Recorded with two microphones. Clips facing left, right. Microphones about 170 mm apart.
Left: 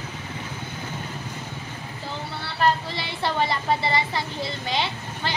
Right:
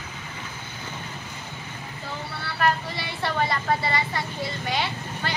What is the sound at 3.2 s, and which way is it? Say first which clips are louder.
Vehicle: left 1 dB; 25° left (ahead or behind).